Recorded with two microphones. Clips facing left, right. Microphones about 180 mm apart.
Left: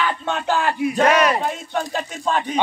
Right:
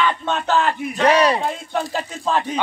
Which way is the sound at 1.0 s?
35° right (ahead or behind).